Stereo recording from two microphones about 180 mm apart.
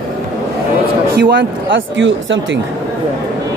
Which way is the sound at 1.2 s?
80° right.